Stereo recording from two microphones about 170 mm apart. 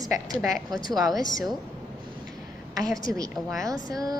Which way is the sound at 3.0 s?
20° right (ahead or behind).